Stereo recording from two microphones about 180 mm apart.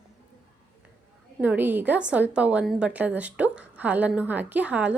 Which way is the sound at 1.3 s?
10° right (ahead or behind).